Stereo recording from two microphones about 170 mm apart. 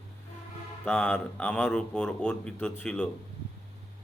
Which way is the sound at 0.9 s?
10° left (ahead or behind).